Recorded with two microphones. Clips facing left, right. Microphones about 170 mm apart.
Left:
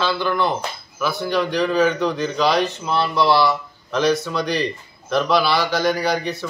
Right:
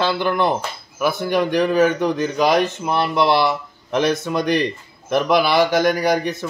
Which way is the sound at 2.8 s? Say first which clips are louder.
Right 1 dB; 20° right (ahead or behind).